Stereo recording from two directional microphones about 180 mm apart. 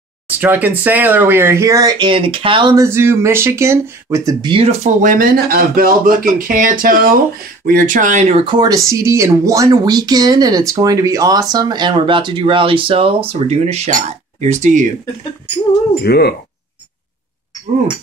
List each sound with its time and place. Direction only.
0.3 s speech: 10° right (ahead or behind); by 2.7 s 30° right (ahead or behind)
2.7 s speech: 15° right (ahead or behind); by 8.5 s 35° right (ahead or behind)
8.5 s speech: 20° right (ahead or behind); by 14.9 s 45° right (ahead or behind)
16.0 s speech: 65° left (ahead or behind)